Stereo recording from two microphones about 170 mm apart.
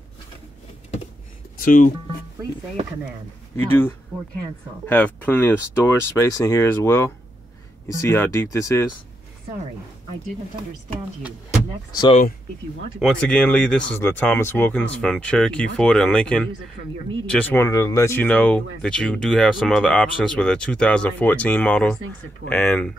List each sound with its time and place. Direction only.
1.6 s speech: 50° left (ahead or behind)
3.5 s speech: 10° left (ahead or behind)
13.0 s speech: 5° left (ahead or behind)
18.2 s speech: 5° left (ahead or behind)